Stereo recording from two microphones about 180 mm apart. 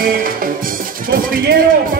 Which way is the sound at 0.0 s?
50° right (ahead or behind).